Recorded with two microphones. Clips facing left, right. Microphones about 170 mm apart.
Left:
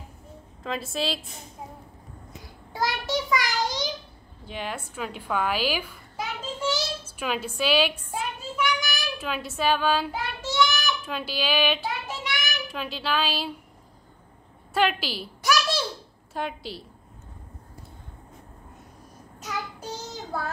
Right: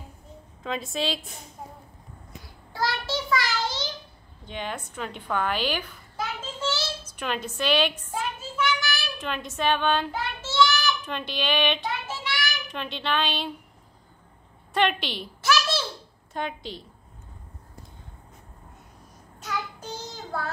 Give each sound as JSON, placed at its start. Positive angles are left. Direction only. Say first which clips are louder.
{"t": 0.7, "sound": "speech", "louder": "even", "side_deg": 0}
{"t": 2.7, "sound": "child singing", "louder": "left 1 dB", "side_deg": 20}
{"t": 4.5, "sound": "a child's voice", "louder": "even", "side_deg": 5}
{"t": 7.1, "sound": "a sound", "louder": "left 1 dB", "side_deg": 5}
{"t": 9.2, "sound": "speech", "louder": "left 1 dB", "side_deg": 5}
{"t": 10.4, "sound": "child singing", "louder": "right 2 dB", "side_deg": 15}
{"t": 11.1, "sound": "speech", "louder": "even", "side_deg": 5}
{"t": 12.2, "sound": "child singing", "louder": "right 1 dB", "side_deg": 20}
{"t": 12.6, "sound": "speech", "louder": "even", "side_deg": 5}
{"t": 14.7, "sound": "speech", "louder": "even", "side_deg": 5}
{"t": 15.4, "sound": "a sound", "louder": "even", "side_deg": 15}
{"t": 16.3, "sound": "speech", "louder": "even", "side_deg": 5}